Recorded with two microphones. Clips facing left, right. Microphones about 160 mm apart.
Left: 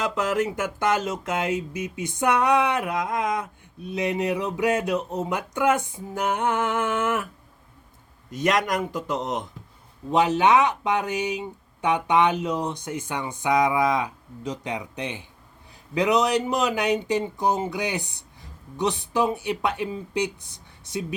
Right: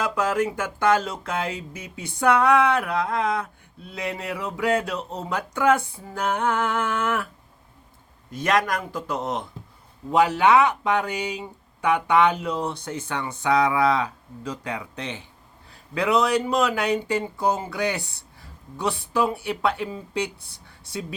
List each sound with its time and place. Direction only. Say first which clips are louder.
0.0 s speech: right 1 dB; 20° left (ahead or behind)
8.3 s speech: even; 20° left (ahead or behind)